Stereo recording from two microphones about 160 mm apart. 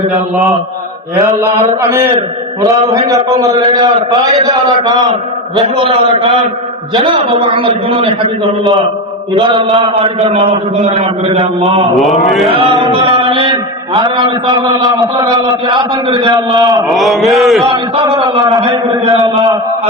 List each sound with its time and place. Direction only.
1.2 s chant: 20° right (ahead or behind)
5.5 s a man's voice: 30° right (ahead or behind)
9.4 s a man's voice: 35° right (ahead or behind)
11.9 s a man's voice: centre (ahead or behind)
12.5 s chant: 35° right (ahead or behind)
16.9 s a man's voice: centre (ahead or behind)
17.9 s chant: 25° right (ahead or behind)